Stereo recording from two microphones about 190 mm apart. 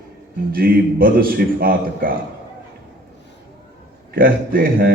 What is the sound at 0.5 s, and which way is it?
A man's voice, 50° right (ahead or behind).